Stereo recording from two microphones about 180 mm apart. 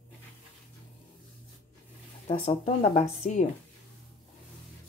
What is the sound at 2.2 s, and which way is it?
Speech, 35° left (ahead or behind).